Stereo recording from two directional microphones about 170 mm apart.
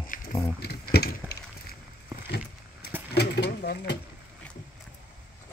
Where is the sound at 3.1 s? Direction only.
75° left (ahead or behind).